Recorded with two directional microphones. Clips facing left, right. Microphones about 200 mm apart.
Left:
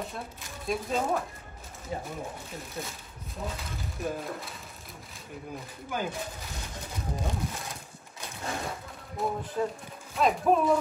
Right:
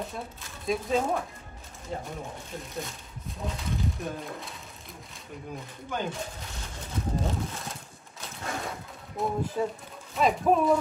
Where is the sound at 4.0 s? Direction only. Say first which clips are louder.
Left 2 dB; centre (ahead or behind).